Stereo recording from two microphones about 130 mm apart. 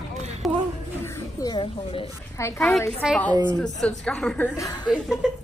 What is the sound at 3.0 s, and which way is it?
Speech, 5° right (ahead or behind).